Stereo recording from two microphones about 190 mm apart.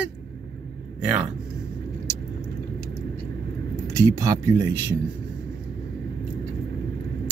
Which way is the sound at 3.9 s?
15° right (ahead or behind).